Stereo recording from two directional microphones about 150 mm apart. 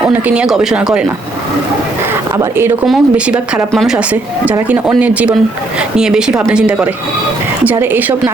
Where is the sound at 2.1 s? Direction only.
15° right (ahead or behind).